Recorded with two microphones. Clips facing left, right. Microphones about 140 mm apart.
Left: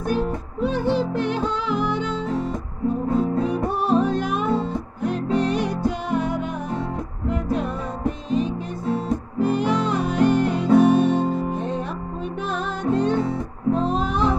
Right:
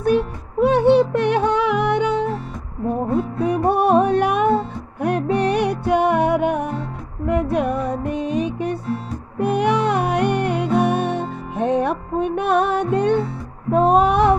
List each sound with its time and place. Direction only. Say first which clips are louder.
0.0 s music: right 5 dB; 65° right (ahead or behind)
3.4 s music: right 5 dB; 65° right (ahead or behind)